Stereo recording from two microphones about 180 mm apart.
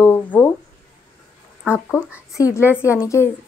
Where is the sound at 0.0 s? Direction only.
10° left (ahead or behind).